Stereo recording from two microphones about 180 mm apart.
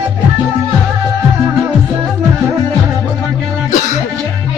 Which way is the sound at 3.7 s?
45° left (ahead or behind).